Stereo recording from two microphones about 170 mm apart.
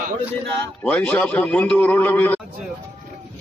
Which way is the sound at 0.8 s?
10° left (ahead or behind).